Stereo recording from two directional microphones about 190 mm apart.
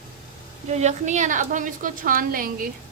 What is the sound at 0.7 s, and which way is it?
A woman's voice, 35° right (ahead or behind).